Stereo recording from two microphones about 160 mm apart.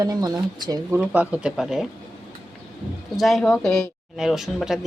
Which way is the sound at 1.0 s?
10° right (ahead or behind).